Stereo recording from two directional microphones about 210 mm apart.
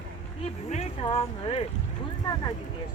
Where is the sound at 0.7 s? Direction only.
30° left (ahead or behind).